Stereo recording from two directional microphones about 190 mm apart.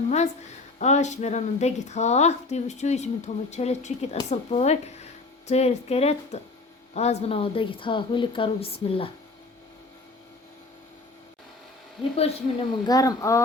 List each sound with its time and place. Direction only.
0.8 s a woman's voice: 35° left (ahead or behind)
12.1 s a woman's voice: 30° left (ahead or behind)